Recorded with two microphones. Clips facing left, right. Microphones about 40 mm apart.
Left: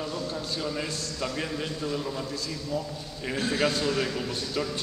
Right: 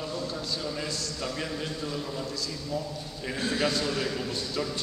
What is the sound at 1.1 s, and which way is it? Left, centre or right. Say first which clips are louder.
A man's voice: left 2 dB; centre.